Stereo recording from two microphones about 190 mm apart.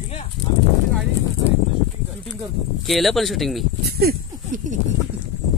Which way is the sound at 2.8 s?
Centre (ahead or behind).